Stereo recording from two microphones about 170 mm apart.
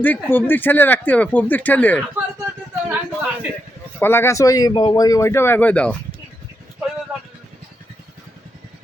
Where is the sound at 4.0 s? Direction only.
15° left (ahead or behind).